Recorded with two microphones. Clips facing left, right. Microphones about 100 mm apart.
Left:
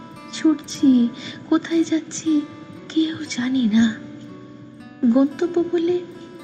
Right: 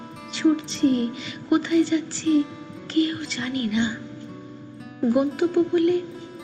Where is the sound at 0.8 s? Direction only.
30° left (ahead or behind).